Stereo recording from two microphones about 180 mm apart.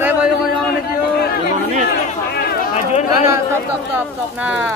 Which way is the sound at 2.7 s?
40° left (ahead or behind).